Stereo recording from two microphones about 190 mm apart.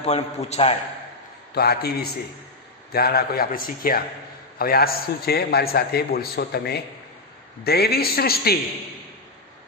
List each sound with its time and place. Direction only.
0.0 s a man's voice: 35° left (ahead or behind)
1.5 s a man's voice: 55° left (ahead or behind)